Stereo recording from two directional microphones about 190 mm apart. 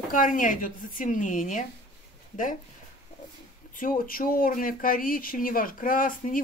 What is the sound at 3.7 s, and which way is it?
Speech, 45° left (ahead or behind).